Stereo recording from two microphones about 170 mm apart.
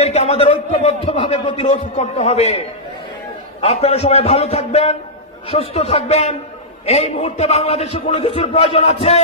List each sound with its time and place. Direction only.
0.0 s speech: 40° left (ahead or behind)
3.6 s a man's voice: 40° left (ahead or behind)